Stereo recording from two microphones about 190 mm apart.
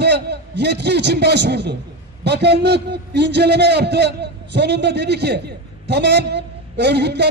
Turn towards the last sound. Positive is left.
turn(degrees=-60)  # may be behind; listen again after turning